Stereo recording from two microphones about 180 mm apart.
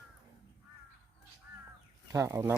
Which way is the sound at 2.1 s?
15° right (ahead or behind).